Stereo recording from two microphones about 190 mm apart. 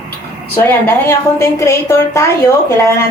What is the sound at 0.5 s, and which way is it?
A woman's voice, 10° left (ahead or behind).